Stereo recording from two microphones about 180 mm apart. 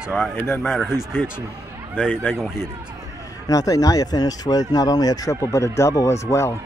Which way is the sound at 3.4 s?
20° left (ahead or behind).